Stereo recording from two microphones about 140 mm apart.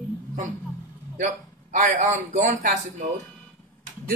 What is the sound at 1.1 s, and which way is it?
A man's voice, 65° right (ahead or behind).